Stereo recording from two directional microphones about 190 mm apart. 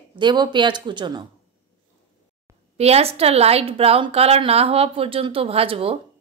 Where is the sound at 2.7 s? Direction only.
35° right (ahead or behind).